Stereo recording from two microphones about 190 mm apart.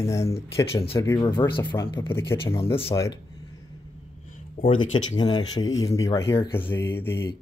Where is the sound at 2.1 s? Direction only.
15° left (ahead or behind).